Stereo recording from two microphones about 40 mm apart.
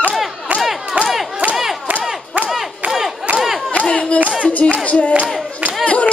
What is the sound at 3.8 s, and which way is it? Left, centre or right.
Clapping, left.